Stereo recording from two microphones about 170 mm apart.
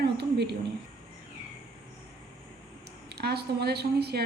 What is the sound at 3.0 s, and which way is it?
A woman's voice, 75° right (ahead or behind).